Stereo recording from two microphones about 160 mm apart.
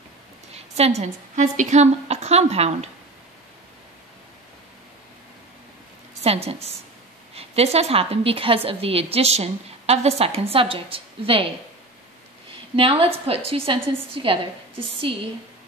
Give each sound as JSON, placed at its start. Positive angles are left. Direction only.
{"t": 0.5, "sound": "a woman's voice", "side_deg": -40}
{"t": 6.2, "sound": "a woman's voice", "side_deg": -40}
{"t": 12.7, "sound": "a woman's voice", "side_deg": -35}